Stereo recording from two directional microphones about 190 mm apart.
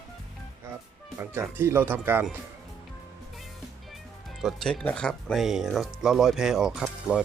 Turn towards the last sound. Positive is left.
turn(degrees=-5)  # may be behind; listen again after turning